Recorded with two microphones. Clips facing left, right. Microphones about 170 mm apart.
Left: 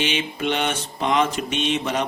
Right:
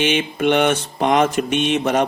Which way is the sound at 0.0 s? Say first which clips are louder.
Right 6 dB; 50° right (ahead or behind).